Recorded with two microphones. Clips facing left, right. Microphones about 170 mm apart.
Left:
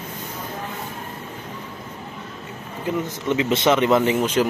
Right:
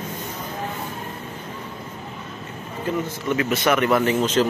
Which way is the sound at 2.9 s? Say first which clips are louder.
Left 1 dB; 15° left (ahead or behind).